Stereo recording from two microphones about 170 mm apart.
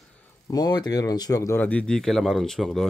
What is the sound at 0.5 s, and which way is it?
Speech, 25° left (ahead or behind).